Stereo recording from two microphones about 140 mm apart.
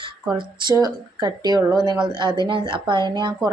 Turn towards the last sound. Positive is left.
turn(degrees=-30)  # may be behind; listen again after turning